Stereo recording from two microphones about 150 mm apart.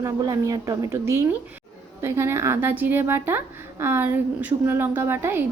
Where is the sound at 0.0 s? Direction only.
25° right (ahead or behind).